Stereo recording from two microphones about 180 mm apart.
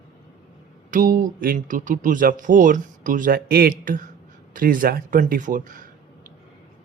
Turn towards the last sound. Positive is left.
turn(degrees=-45)  # may be behind; listen again after turning